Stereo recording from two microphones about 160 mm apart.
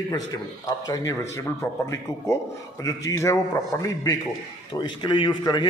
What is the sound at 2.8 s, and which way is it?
A man's voice, 20° left (ahead or behind).